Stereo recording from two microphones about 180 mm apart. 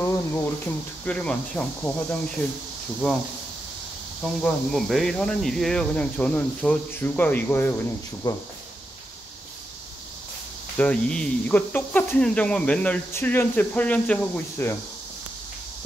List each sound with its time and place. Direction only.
0.0 s speech: 15° left (ahead or behind)
4.2 s speech: centre (ahead or behind)
8.2 s speech: 20° left (ahead or behind)
10.8 s speech: 5° left (ahead or behind)